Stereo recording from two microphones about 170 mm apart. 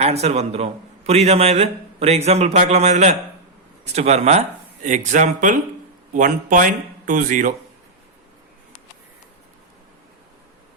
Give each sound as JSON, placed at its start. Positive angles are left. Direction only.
{"t": 0.0, "sound": "a man's voice", "side_deg": -40}